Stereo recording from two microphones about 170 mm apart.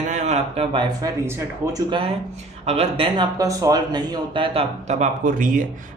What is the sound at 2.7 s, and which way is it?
Speech, 35° right (ahead or behind).